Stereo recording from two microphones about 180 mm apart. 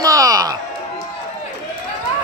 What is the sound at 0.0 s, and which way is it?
Music, 20° right (ahead or behind).